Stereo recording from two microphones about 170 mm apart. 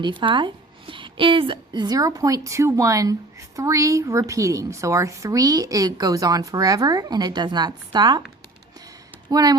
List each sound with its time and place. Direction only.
0.0 s a woman's voice: 30° right (ahead or behind)
9.3 s a woman's voice: 25° right (ahead or behind)